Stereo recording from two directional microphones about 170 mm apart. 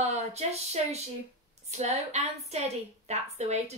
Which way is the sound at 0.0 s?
40° right (ahead or behind).